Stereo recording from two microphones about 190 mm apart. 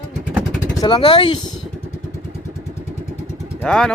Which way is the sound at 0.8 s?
25° left (ahead or behind).